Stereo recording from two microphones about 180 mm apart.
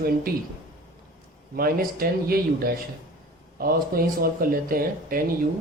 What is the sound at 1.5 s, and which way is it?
Speech, 55° right (ahead or behind).